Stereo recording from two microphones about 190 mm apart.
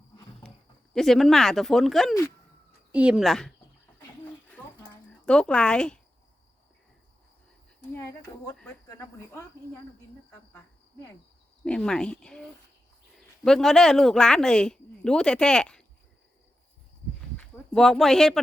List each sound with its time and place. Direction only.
0.4 s a sound: centre (ahead or behind)
0.9 s speech: centre (ahead or behind)
4.5 s a sound: 5° left (ahead or behind)
7.9 s speech: 15° left (ahead or behind)
11.6 s speech: 5° left (ahead or behind)
17.3 s speech: 5° left (ahead or behind)